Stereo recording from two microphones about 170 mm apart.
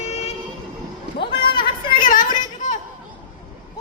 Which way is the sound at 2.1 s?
50° left (ahead or behind).